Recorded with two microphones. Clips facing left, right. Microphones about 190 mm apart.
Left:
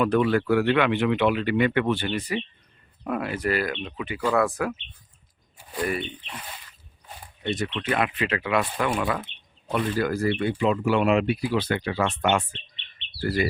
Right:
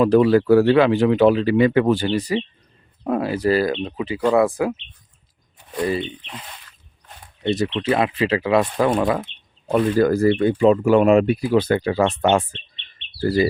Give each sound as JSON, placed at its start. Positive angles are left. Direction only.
{"t": 0.0, "sound": "speech", "side_deg": -35}
{"t": 5.5, "sound": "a sound", "side_deg": 0}
{"t": 7.4, "sound": "speech", "side_deg": -30}
{"t": 13.1, "sound": "speech", "side_deg": -30}